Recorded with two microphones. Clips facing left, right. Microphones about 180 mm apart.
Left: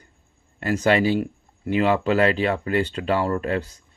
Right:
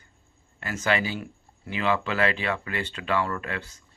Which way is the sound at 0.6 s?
35° left (ahead or behind).